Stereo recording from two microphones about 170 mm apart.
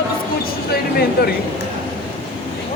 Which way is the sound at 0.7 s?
65° left (ahead or behind).